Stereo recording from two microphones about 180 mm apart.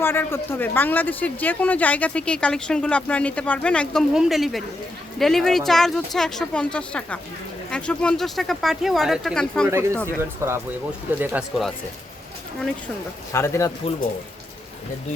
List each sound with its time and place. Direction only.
0.0 s speech: 10° left (ahead or behind)
10.2 s speech: 15° right (ahead or behind)
13.3 s speech: 15° left (ahead or behind)